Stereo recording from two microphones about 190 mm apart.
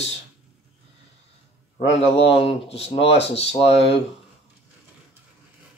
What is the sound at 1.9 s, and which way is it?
Speech, 30° left (ahead or behind).